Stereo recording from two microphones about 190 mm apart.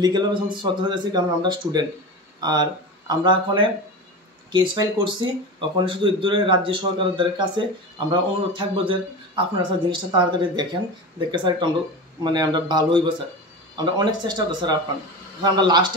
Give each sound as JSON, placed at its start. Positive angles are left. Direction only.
{"t": 0.0, "sound": "speech", "side_deg": -25}